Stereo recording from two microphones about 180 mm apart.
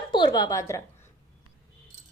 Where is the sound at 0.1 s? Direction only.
25° left (ahead or behind).